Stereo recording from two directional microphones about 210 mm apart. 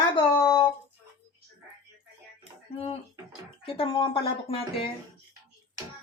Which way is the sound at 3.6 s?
25° left (ahead or behind).